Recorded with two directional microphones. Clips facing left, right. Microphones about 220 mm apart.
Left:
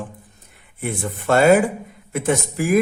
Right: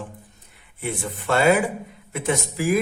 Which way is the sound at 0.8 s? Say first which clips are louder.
Left 3 dB; 50° left (ahead or behind).